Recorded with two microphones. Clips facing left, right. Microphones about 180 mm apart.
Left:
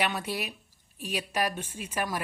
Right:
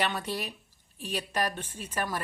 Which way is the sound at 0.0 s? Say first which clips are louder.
Left 1 dB; 10° left (ahead or behind).